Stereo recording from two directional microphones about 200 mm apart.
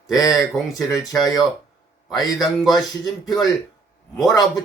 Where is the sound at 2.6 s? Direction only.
Centre (ahead or behind).